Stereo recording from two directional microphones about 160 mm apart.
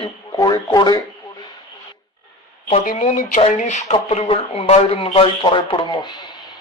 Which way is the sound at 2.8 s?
55° left (ahead or behind).